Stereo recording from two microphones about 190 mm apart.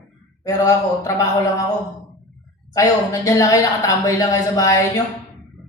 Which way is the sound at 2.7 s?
20° left (ahead or behind).